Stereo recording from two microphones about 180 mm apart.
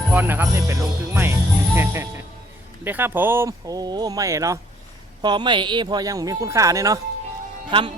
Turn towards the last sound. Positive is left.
turn(degrees=-25)  # may be behind; listen again after turning